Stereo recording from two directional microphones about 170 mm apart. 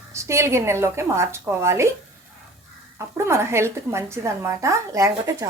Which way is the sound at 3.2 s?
15° right (ahead or behind).